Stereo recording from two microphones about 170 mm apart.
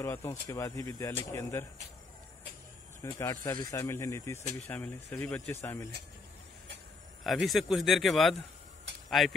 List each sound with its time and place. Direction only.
0.0 s speech: 15° left (ahead or behind)
3.0 s speech: 15° left (ahead or behind)
7.2 s speech: centre (ahead or behind)